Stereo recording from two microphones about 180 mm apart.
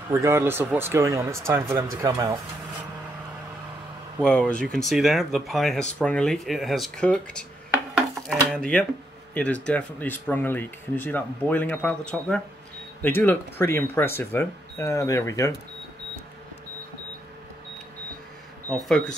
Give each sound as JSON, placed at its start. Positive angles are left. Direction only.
{"t": 0.1, "sound": "speech", "side_deg": -15}
{"t": 4.2, "sound": "speech", "side_deg": 5}
{"t": 7.9, "sound": "dishes", "side_deg": 0}
{"t": 9.3, "sound": "speech", "side_deg": 5}
{"t": 18.9, "sound": "speech", "side_deg": 5}